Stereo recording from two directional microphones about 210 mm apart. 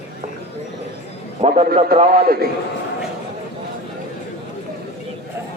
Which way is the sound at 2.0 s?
40° right (ahead or behind).